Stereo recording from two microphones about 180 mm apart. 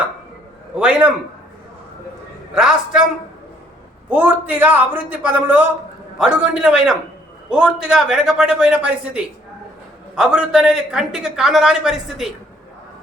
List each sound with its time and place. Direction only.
0.8 s a man's voice: 5° right (ahead or behind)
2.6 s a man's voice: 5° right (ahead or behind)
4.1 s a man's voice: 10° right (ahead or behind)